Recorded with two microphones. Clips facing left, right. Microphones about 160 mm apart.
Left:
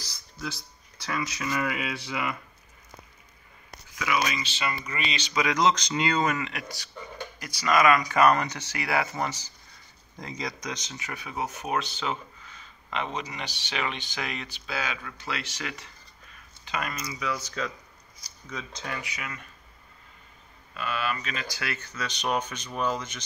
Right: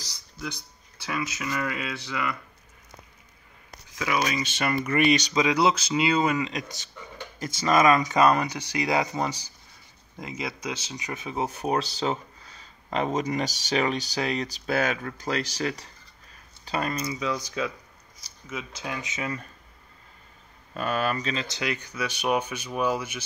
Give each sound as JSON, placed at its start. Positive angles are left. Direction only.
{"t": 1.0, "sound": "speech", "side_deg": -10}
{"t": 1.5, "sound": "a sound", "side_deg": 5}
{"t": 4.0, "sound": "speech", "side_deg": -35}
{"t": 5.5, "sound": "speech", "side_deg": -10}
{"t": 10.9, "sound": "speech", "side_deg": -20}
{"t": 17.4, "sound": "speech", "side_deg": -10}
{"t": 18.9, "sound": "speech", "side_deg": -25}
{"t": 20.7, "sound": "speech", "side_deg": -45}